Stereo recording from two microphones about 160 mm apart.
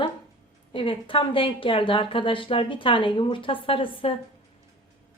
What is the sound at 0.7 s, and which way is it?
A woman's voice, 35° left (ahead or behind).